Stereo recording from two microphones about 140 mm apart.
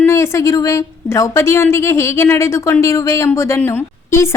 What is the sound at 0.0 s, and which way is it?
A woman's voice, 20° left (ahead or behind).